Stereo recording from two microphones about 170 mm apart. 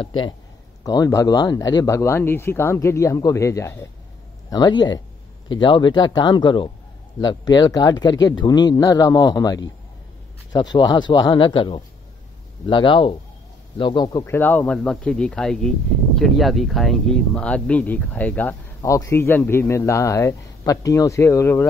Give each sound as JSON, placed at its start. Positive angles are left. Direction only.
{"t": 0.0, "sound": "a man's voice", "side_deg": 30}